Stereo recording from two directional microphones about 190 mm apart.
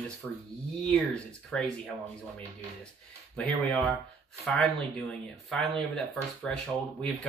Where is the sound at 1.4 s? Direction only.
5° left (ahead or behind).